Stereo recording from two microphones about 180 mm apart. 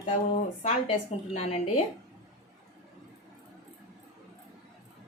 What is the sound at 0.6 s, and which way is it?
A woman's voice, 35° left (ahead or behind).